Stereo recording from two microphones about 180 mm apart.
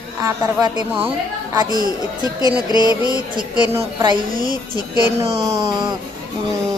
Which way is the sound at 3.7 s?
25° right (ahead or behind).